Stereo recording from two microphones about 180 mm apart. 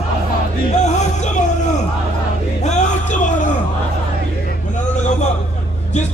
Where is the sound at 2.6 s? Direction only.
40° left (ahead or behind).